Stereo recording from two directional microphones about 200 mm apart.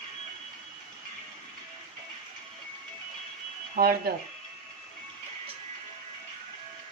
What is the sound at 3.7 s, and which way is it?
Speech, 50° right (ahead or behind).